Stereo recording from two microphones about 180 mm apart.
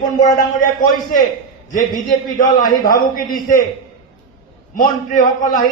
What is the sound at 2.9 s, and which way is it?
Speech, 50° left (ahead or behind).